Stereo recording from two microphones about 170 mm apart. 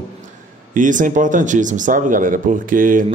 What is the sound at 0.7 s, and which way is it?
Speech, 50° right (ahead or behind).